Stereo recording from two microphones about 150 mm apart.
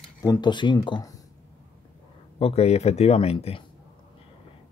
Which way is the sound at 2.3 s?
45° left (ahead or behind).